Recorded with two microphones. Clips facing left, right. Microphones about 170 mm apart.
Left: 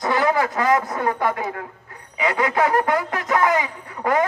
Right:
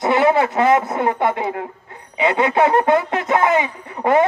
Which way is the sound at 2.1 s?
25° right (ahead or behind).